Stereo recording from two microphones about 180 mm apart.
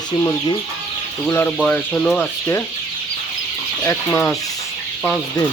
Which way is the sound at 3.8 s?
15° left (ahead or behind).